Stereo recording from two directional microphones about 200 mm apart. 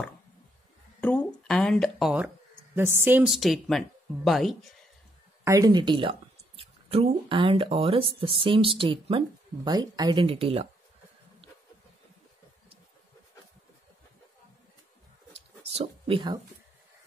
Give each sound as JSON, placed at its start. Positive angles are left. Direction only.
{"t": 1.0, "sound": "speech", "side_deg": 5}
{"t": 5.4, "sound": "speech", "side_deg": -15}
{"t": 15.7, "sound": "a sound", "side_deg": -30}